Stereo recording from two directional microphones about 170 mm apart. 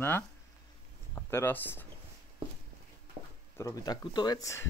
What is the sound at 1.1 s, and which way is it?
Speech, 10° left (ahead or behind).